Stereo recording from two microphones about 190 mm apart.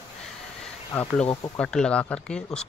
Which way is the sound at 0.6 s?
5° left (ahead or behind).